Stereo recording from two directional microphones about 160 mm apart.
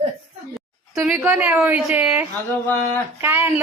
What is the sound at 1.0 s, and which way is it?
A woman's voice, 5° right (ahead or behind).